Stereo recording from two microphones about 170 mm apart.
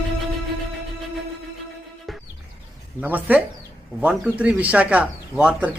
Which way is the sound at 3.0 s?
10° right (ahead or behind).